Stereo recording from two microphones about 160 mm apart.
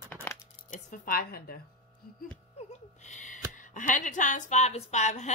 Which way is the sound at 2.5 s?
50° left (ahead or behind).